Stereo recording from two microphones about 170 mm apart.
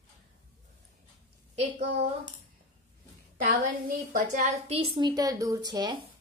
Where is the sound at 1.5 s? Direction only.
50° right (ahead or behind).